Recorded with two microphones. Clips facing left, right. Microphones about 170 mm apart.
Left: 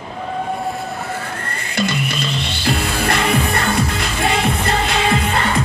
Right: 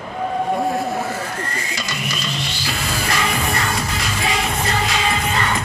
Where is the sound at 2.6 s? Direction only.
60° left (ahead or behind).